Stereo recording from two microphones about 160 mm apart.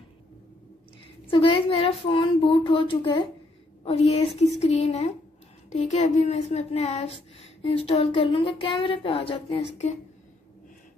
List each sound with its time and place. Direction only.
1.3 s speech: 35° left (ahead or behind)